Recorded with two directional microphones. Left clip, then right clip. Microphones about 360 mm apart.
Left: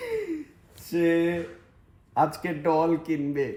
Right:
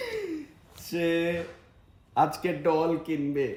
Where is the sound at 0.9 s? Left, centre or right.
Centre.